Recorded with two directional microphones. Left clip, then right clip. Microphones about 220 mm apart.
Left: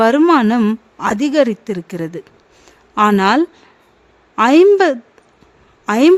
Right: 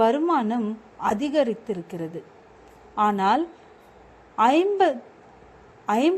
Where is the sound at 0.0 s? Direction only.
30° left (ahead or behind).